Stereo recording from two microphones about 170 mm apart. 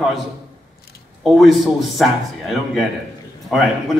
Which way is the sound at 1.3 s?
Centre (ahead or behind).